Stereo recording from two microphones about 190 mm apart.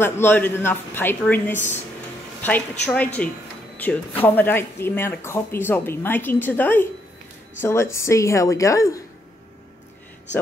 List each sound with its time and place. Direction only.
0.0 s speech: 10° left (ahead or behind)
2.9 s speech: 5° left (ahead or behind)